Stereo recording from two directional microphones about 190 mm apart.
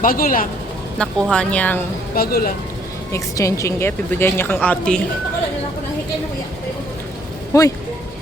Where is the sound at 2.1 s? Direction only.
50° left (ahead or behind).